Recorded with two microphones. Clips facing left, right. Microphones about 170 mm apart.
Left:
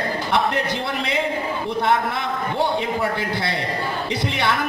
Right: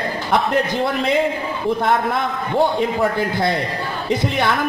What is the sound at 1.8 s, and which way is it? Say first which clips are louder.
A man's voice: even; 50° right (ahead or behind).